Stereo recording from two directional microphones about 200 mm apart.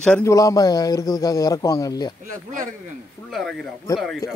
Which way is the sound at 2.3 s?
40° right (ahead or behind).